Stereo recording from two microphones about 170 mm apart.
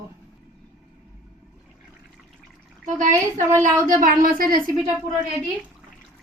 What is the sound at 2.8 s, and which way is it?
Speech, 50° right (ahead or behind).